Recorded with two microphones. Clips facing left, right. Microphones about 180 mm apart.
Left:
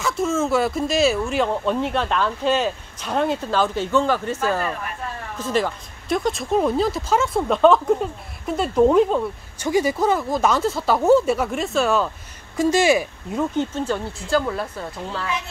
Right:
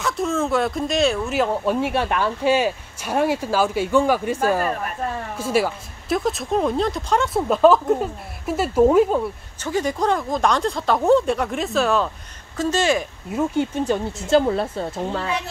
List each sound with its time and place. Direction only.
0.0 s speech: centre (ahead or behind)
9.6 s speech: 10° left (ahead or behind)
12.5 s speech: 10° left (ahead or behind)
13.3 s speech: 10° right (ahead or behind)
14.4 s speech: 25° right (ahead or behind)